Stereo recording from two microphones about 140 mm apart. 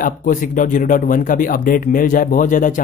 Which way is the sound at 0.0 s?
70° left (ahead or behind).